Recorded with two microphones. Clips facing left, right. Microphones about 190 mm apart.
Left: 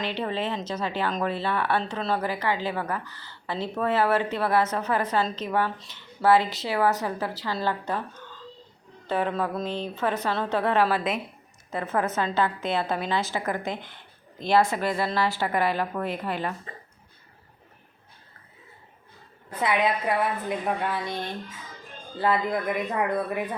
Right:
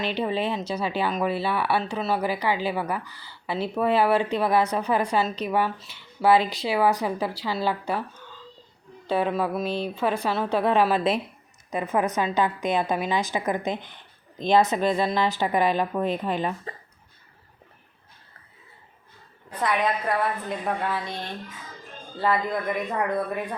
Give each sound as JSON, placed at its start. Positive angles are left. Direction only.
{"t": 0.1, "sound": "speech", "side_deg": -15}
{"t": 9.0, "sound": "speech", "side_deg": -15}
{"t": 19.5, "sound": "a woman's voice", "side_deg": 10}
{"t": 22.2, "sound": "speech", "side_deg": 5}